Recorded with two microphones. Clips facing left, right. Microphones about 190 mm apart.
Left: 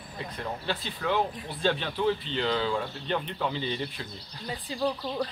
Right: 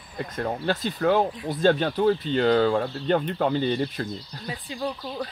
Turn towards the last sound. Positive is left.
turn(degrees=0)  # may be behind; listen again after turning